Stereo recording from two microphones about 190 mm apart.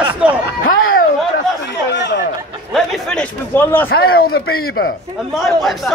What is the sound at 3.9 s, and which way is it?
Speech, 55° left (ahead or behind).